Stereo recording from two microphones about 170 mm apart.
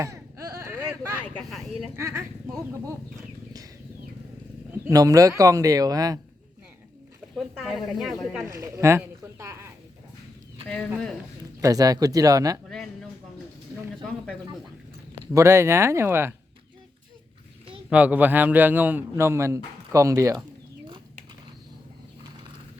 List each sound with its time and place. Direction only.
0.0 s a sound: 20° right (ahead or behind)
1.5 s speech: centre (ahead or behind)
2.0 s a man's voice: 15° right (ahead or behind)
4.7 s speech: 20° right (ahead or behind)
7.3 s speech: centre (ahead or behind)
8.4 s speech: 20° right (ahead or behind)
10.7 s speech: centre (ahead or behind)
11.6 s speech: 20° right (ahead or behind)
12.6 s a sound: 5° left (ahead or behind)
15.3 s a man's voice: 15° right (ahead or behind)
17.9 s a man's voice: 10° right (ahead or behind)